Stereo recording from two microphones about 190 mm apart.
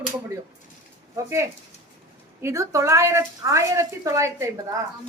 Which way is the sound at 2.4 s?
15° right (ahead or behind).